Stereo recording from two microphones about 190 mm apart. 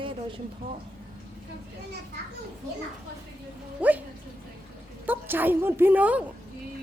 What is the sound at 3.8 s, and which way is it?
Speech, 5° right (ahead or behind).